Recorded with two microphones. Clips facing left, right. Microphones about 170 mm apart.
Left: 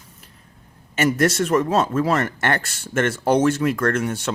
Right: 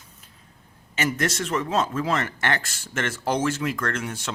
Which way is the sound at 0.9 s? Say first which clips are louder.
Left 7 dB; 50° left (ahead or behind).